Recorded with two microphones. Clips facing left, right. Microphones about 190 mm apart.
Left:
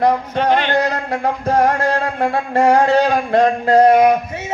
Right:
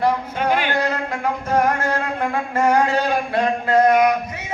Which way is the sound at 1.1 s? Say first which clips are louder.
Left 5 dB; 35° left (ahead or behind).